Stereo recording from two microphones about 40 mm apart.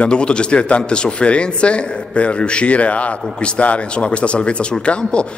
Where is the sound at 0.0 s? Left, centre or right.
Left.